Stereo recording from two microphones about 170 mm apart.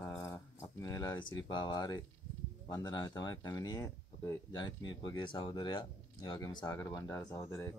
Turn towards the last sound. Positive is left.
turn(degrees=20)  # may be behind; listen again after turning